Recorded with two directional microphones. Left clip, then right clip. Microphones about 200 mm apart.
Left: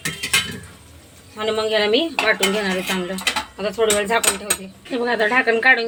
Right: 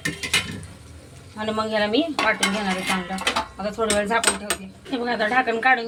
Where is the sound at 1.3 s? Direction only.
45° left (ahead or behind).